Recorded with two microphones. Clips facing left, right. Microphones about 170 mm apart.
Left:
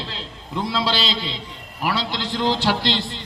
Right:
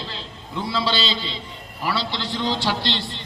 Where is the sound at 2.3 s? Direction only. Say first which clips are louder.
Left 4 dB; 40° left (ahead or behind).